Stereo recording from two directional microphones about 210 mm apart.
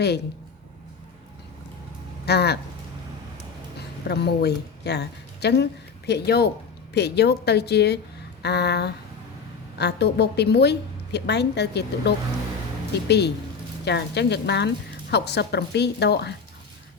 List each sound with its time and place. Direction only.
2.2 s a woman's voice: 50° left (ahead or behind)
4.1 s a woman's voice: 50° left (ahead or behind)